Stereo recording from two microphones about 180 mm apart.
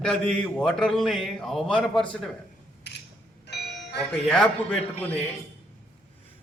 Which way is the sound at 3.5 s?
70° left (ahead or behind).